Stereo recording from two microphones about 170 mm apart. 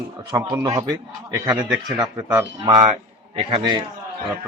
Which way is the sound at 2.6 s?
30° right (ahead or behind).